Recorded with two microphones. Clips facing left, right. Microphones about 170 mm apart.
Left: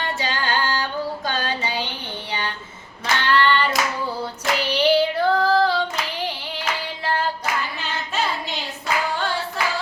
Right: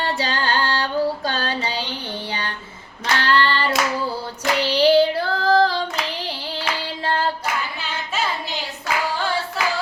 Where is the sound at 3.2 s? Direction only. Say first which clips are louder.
Left 1 dB; 35° right (ahead or behind).